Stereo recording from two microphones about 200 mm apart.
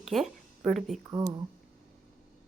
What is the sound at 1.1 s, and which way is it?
Speech, 20° right (ahead or behind).